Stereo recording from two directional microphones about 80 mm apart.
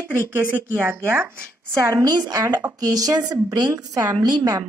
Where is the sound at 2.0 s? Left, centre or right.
Right.